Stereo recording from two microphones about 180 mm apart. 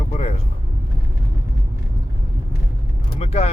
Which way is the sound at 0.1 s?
35° left (ahead or behind).